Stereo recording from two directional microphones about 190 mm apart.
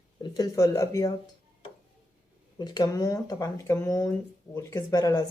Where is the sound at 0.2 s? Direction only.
20° left (ahead or behind).